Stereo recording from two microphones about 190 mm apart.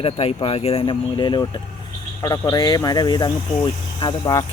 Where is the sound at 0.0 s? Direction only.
30° left (ahead or behind).